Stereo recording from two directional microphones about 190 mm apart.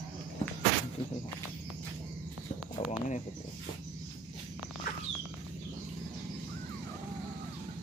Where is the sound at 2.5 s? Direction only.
5° right (ahead or behind).